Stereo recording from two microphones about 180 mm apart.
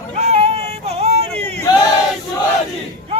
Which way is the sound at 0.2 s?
35° right (ahead or behind).